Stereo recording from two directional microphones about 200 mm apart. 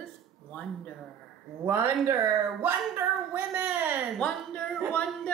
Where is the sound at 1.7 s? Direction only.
15° right (ahead or behind).